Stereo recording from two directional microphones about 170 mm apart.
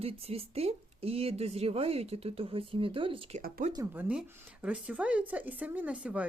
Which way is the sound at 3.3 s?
55° right (ahead or behind).